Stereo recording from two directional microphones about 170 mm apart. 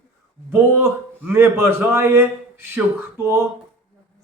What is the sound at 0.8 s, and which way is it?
Speech, 15° right (ahead or behind).